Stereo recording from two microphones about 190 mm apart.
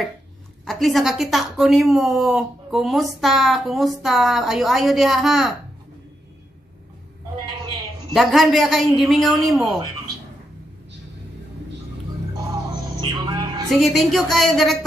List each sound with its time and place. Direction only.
0.7 s speech: centre (ahead or behind)
8.1 s speech: centre (ahead or behind)
13.1 s music: 20° right (ahead or behind)
13.7 s speech: centre (ahead or behind)